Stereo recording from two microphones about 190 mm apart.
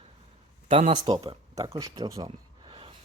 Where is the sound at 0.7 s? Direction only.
30° right (ahead or behind).